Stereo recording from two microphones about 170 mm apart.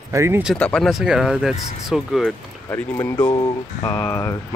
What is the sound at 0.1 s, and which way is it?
Speech, 15° right (ahead or behind).